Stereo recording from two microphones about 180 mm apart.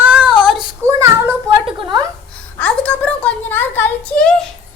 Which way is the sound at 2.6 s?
5° left (ahead or behind).